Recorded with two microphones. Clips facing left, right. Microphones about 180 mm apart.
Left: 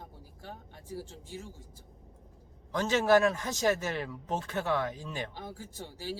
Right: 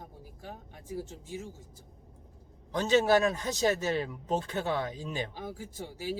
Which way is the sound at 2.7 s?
20° right (ahead or behind).